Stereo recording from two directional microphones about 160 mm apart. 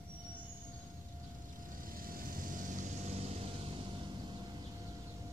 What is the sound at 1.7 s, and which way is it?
Vehicle, 60° right (ahead or behind).